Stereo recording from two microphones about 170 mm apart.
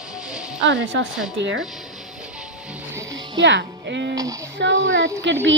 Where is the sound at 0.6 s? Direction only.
90° right.